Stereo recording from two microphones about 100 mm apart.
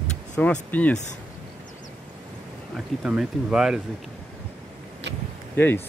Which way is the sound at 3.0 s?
5° right (ahead or behind).